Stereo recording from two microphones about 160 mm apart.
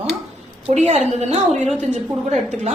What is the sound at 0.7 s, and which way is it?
A woman's voice, 45° right (ahead or behind).